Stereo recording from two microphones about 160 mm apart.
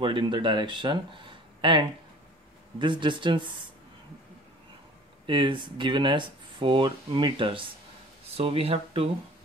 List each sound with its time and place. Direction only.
0.0 s speech: 30° right (ahead or behind)
5.2 s speech: 30° right (ahead or behind)